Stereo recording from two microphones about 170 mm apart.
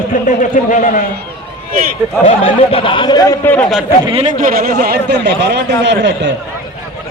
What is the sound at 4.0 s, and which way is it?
Speech, 30° right (ahead or behind).